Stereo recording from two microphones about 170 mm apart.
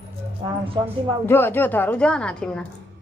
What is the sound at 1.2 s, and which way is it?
A woman's voice, 15° left (ahead or behind).